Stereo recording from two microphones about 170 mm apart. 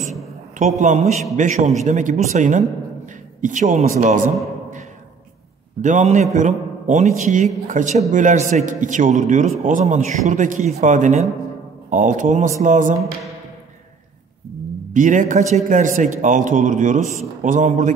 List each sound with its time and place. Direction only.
0.6 s speech: 45° right (ahead or behind)
5.8 s speech: 45° right (ahead or behind)
15.0 s speech: 50° right (ahead or behind)